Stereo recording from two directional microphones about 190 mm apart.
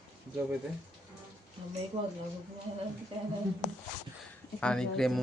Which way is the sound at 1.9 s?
15° right (ahead or behind).